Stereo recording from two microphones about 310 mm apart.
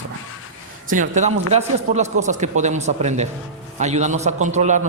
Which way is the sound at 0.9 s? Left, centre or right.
Right.